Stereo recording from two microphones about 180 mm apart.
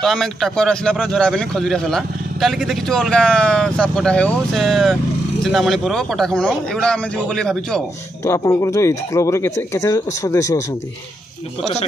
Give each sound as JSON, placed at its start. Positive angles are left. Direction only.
{"t": 0.0, "sound": "a man's voice", "side_deg": 0}
{"t": 8.3, "sound": "speech", "side_deg": 15}